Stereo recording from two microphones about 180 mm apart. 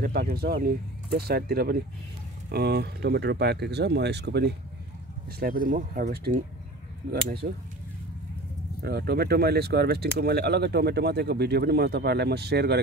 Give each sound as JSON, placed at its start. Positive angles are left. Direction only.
{"t": 0.0, "sound": "speech", "side_deg": -60}
{"t": 5.4, "sound": "speech", "side_deg": -50}
{"t": 7.4, "sound": "speech", "side_deg": -55}
{"t": 8.8, "sound": "speech", "side_deg": -60}